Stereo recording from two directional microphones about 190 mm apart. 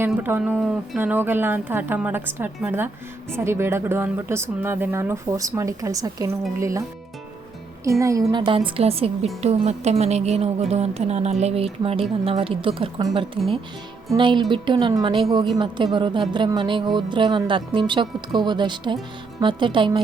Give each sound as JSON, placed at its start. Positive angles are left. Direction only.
{"t": 0.0, "sound": "speech", "side_deg": -10}
{"t": 7.9, "sound": "speech", "side_deg": -15}
{"t": 14.1, "sound": "speech", "side_deg": -25}